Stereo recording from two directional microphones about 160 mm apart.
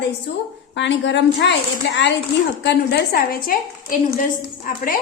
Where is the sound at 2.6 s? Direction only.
85° left; by 5.0 s 60° left (ahead or behind).